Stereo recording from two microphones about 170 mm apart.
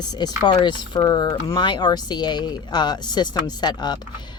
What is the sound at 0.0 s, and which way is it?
A woman's voice, 25° left (ahead or behind).